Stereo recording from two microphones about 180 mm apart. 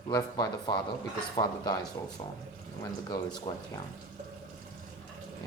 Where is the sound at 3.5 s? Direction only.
20° left (ahead or behind).